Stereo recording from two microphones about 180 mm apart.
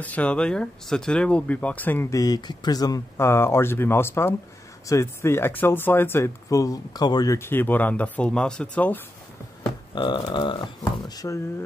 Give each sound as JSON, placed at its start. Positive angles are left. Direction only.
{"t": 0.0, "sound": "speech", "side_deg": 10}
{"t": 9.9, "sound": "speech", "side_deg": 25}